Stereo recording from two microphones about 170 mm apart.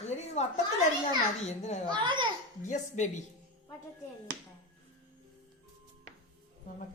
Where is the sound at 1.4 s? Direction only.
40° left (ahead or behind).